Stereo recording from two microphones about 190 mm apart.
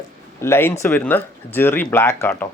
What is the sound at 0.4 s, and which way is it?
A man's voice, 15° left (ahead or behind).